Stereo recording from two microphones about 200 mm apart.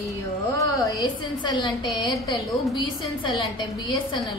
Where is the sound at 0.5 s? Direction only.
20° left (ahead or behind).